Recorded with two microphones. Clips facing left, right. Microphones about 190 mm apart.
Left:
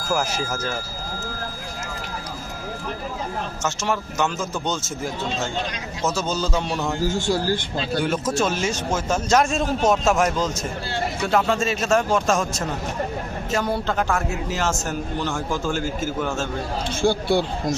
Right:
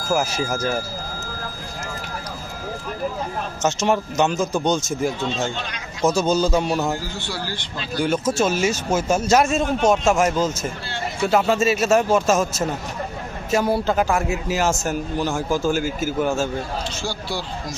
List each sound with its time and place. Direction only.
0.0 s speech: centre (ahead or behind)
3.6 s a man's voice: 20° right (ahead or behind)
7.0 s speech: 45° left (ahead or behind)
8.0 s a man's voice: centre (ahead or behind)
17.0 s speech: 55° left (ahead or behind)